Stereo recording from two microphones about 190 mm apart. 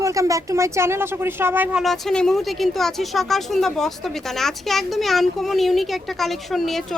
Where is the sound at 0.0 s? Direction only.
15° right (ahead or behind).